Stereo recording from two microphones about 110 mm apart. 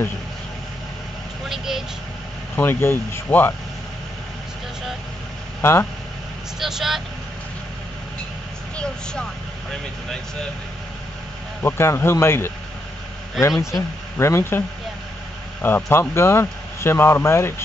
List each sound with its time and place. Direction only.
1.5 s vehicle: 5° right (ahead or behind)
2.5 s speech: 20° left (ahead or behind)
5.6 s speech: 25° left (ahead or behind)
6.6 s speech: centre (ahead or behind)
9.7 s speech: 5° left (ahead or behind)
11.6 s speech: 20° left (ahead or behind)
15.6 s speech: 20° left (ahead or behind)